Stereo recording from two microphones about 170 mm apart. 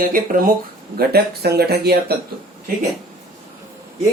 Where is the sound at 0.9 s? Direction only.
65° right (ahead or behind).